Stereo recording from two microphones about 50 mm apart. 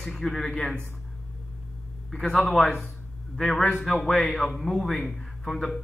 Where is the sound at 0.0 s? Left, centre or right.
Centre.